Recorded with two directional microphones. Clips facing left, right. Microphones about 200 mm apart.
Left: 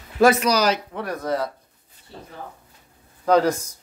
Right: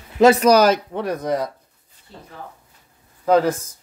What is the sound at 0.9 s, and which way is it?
Speech, 20° right (ahead or behind).